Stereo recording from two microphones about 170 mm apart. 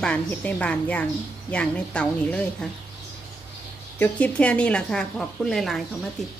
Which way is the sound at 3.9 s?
10° left (ahead or behind).